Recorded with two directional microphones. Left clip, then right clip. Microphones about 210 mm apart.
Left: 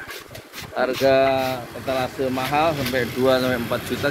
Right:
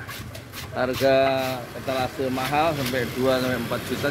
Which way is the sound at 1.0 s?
15° left (ahead or behind).